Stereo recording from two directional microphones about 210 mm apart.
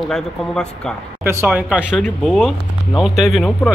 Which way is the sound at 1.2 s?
10° right (ahead or behind).